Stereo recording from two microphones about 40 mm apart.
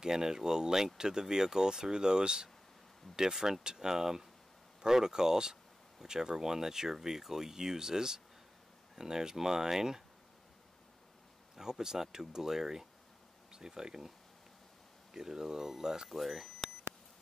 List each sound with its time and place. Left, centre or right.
0.0 s speech: centre
11.5 s speech: centre
15.1 s speech: centre
16.1 s speech: centre